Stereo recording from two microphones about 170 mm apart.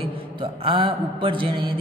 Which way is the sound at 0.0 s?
35° right (ahead or behind).